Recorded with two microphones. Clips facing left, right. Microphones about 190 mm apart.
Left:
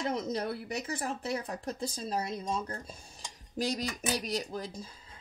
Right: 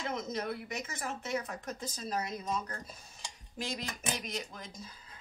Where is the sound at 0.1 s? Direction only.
35° left (ahead or behind).